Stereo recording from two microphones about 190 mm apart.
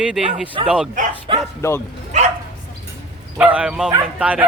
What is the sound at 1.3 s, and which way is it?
Bow-wow, 25° right (ahead or behind).